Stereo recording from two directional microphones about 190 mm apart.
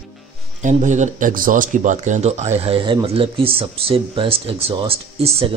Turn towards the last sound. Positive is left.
turn(degrees=-30)  # may be behind; listen again after turning